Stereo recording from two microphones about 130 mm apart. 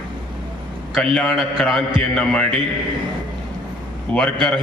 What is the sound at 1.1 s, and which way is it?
A man's voice, centre (ahead or behind).